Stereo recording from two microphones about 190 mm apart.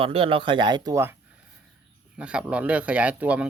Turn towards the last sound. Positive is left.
turn(degrees=-5)  # may be behind; listen again after turning